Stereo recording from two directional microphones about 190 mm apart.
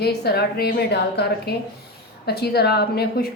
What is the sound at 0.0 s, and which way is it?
A woman's voice, 55° left (ahead or behind).